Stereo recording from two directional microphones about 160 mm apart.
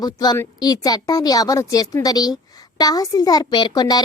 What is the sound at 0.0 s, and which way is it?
A woman's voice, 25° left (ahead or behind).